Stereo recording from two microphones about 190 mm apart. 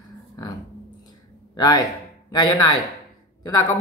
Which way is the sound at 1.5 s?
20° left (ahead or behind).